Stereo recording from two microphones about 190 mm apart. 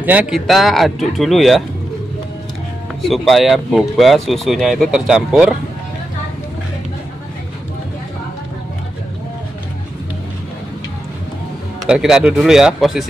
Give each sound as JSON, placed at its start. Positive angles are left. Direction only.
{"t": 0.0, "sound": "speech", "side_deg": -5}
{"t": 3.0, "sound": "speech", "side_deg": 0}
{"t": 11.8, "sound": "speech", "side_deg": -5}